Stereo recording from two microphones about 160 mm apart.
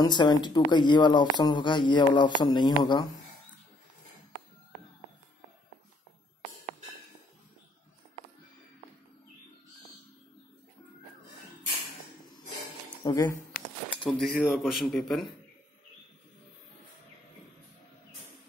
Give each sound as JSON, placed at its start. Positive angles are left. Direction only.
{"t": 0.0, "sound": "speech", "side_deg": 25}
{"t": 13.0, "sound": "a sound", "side_deg": 20}
{"t": 14.2, "sound": "a man's voice", "side_deg": 0}